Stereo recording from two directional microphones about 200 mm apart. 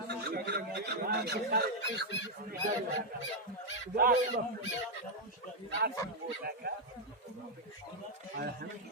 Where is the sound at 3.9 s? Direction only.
45° right (ahead or behind).